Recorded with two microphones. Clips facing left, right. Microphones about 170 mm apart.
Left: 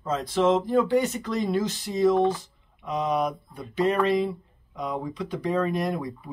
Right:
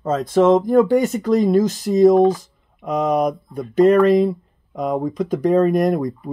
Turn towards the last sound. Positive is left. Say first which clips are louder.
# right 10 dB
turn(degrees=-45)  # may be behind; listen again after turning